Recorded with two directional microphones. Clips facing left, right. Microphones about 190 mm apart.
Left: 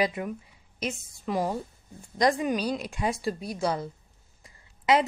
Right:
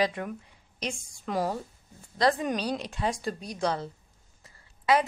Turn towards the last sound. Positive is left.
turn(degrees=20)  # may be behind; listen again after turning